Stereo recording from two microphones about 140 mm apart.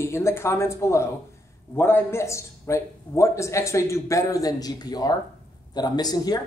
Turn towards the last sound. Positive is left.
turn(degrees=30)  # may be behind; listen again after turning